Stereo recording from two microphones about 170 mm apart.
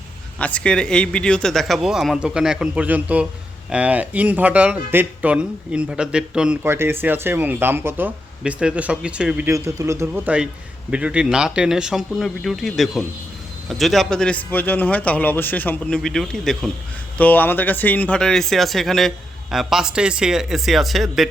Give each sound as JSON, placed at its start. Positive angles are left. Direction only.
{"t": 0.3, "sound": "speech", "side_deg": 5}
{"t": 9.5, "sound": "a man's voice", "side_deg": -20}